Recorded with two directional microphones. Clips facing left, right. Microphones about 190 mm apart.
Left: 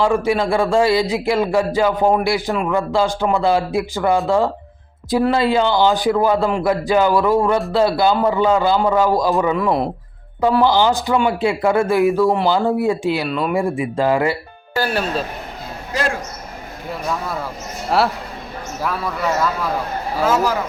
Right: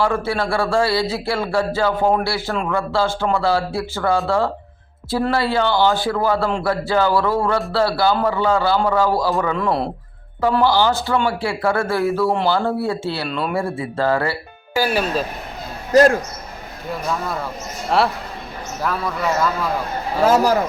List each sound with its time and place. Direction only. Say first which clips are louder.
0.0 s a man's voice: left 3 dB; 15° left (ahead or behind)
9.6 s a man's voice: left 2 dB; 5° left (ahead or behind)
10.6 s a man's voice: left 1 dB; 15° left (ahead or behind)
15.9 s speech: right 10 dB; 45° right (ahead or behind)
17.9 s a man's voice: even; centre (ahead or behind)
20.2 s a man's voice: right 3 dB; 40° right (ahead or behind)